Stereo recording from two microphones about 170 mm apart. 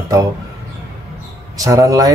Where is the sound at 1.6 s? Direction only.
20° right (ahead or behind).